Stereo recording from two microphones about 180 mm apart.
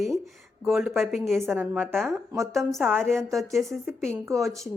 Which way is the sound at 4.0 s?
15° right (ahead or behind).